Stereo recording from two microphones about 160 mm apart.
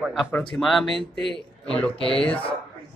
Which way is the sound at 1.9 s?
35° left (ahead or behind).